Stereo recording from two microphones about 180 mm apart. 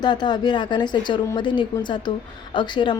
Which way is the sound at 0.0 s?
25° left (ahead or behind).